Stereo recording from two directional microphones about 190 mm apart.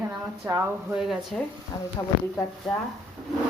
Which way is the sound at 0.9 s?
Centre (ahead or behind).